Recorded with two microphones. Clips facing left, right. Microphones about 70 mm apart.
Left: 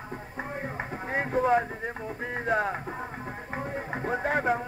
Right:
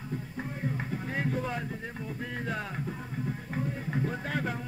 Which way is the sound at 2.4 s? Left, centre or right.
Left.